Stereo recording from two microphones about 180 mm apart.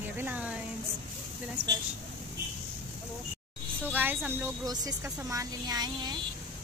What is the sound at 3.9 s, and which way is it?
Speech, 10° right (ahead or behind).